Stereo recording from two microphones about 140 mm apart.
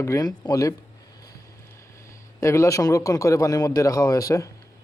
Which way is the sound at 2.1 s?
20° left (ahead or behind).